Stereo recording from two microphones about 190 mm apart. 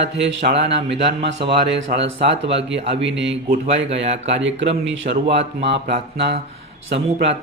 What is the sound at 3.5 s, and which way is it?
Speech, 35° right (ahead or behind).